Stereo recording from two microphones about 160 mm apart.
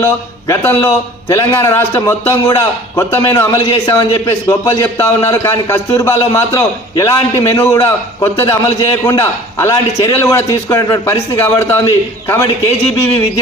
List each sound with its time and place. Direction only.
0.0 s a man's voice: 15° left (ahead or behind)